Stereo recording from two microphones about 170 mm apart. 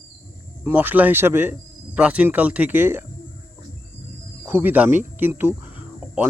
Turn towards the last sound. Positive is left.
turn(degrees=-10)  # may be behind; listen again after turning